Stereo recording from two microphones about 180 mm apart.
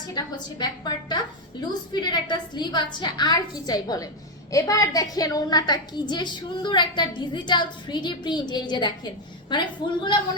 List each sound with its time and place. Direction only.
0.1 s a woman's voice: 25° left (ahead or behind)